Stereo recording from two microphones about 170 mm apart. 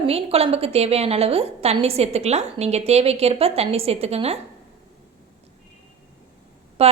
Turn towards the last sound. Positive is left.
turn(degrees=-35)  # may be behind; listen again after turning